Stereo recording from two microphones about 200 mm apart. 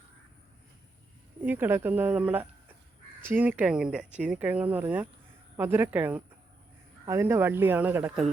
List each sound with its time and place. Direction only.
1.4 s speech: 10° right (ahead or behind)